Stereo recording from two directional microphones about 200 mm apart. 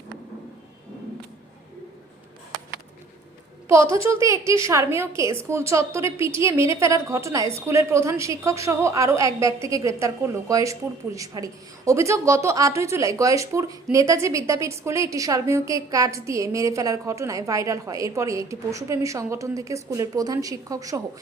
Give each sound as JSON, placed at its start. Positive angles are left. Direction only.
{"t": 3.7, "sound": "a woman's voice", "side_deg": -15}